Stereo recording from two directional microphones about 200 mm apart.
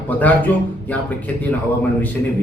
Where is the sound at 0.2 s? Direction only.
10° left (ahead or behind).